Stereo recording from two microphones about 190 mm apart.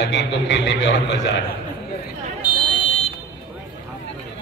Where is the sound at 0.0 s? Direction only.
70° left (ahead or behind).